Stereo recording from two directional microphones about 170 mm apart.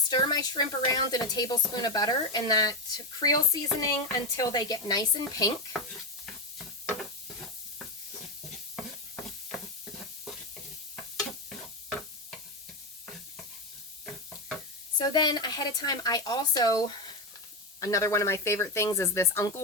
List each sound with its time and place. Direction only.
0.1 s speech: 25° left (ahead or behind)
11.2 s stir: 5° left (ahead or behind)
14.9 s speech: 25° left (ahead or behind)